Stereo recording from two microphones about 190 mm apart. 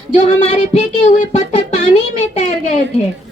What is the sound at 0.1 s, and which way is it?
Speech, 35° left (ahead or behind).